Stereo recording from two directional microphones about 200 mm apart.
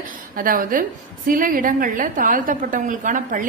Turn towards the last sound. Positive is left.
turn(degrees=-40)  # may be behind; listen again after turning